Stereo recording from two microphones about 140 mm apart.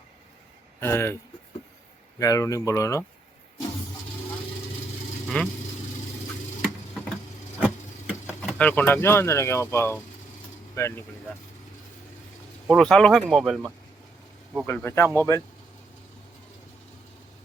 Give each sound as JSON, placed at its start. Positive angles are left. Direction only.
{"t": 0.8, "sound": "speech", "side_deg": 15}
{"t": 5.3, "sound": "speech", "side_deg": 10}
{"t": 6.6, "sound": "tick-tock", "side_deg": -5}
{"t": 8.5, "sound": "speech", "side_deg": 10}
{"t": 12.6, "sound": "speech", "side_deg": 5}
{"t": 14.7, "sound": "speech", "side_deg": 15}